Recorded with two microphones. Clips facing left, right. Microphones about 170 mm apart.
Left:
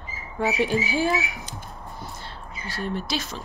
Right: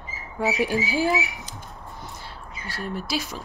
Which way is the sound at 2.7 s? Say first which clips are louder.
Even; 5° right (ahead or behind).